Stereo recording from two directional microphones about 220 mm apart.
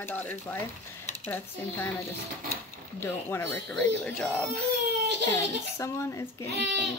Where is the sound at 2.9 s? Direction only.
10° left (ahead or behind).